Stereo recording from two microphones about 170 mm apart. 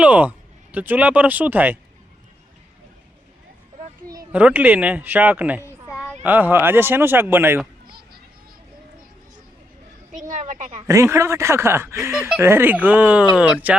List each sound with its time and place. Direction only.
0.0 s speech: 10° right (ahead or behind)
4.3 s speech: 10° right (ahead or behind)
10.1 s a woman's voice: 45° right (ahead or behind)
10.8 s speech: 20° right (ahead or behind)
12.1 s speech: 5° right (ahead or behind)